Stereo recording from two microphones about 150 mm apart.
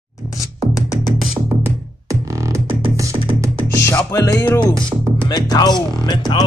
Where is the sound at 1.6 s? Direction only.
20° right (ahead or behind).